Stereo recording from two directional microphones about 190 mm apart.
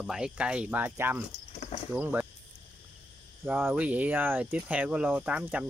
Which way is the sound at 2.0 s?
10° right (ahead or behind).